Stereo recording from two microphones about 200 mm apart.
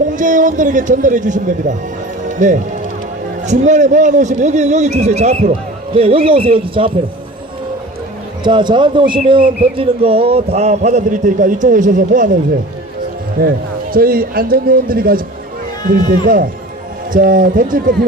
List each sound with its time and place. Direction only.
0.2 s a man's voice: 40° right (ahead or behind)
8.4 s a man's voice: 25° right (ahead or behind); by 12.4 s 40° right (ahead or behind)
13.4 s a man's voice: 45° right (ahead or behind)
16.2 s a man's voice: 45° right (ahead or behind)